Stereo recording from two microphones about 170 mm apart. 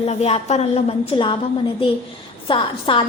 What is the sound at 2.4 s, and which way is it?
Speech, 30° left (ahead or behind).